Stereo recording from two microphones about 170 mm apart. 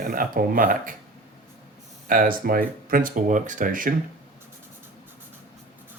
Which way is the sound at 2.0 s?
55° right (ahead or behind).